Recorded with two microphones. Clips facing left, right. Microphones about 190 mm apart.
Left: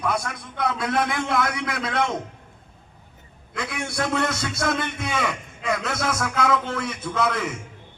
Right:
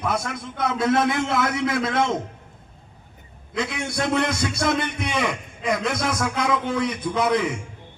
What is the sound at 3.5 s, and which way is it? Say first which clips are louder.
A man's voice: right 3 dB; 20° right (ahead or behind).